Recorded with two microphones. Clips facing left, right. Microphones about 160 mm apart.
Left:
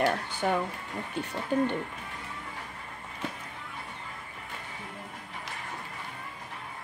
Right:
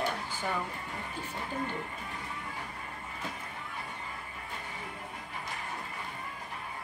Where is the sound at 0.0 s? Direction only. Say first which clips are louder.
Left 6 dB; 75° left (ahead or behind).